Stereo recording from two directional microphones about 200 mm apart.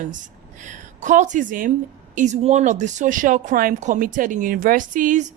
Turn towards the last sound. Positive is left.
turn(degrees=-40)  # may be behind; listen again after turning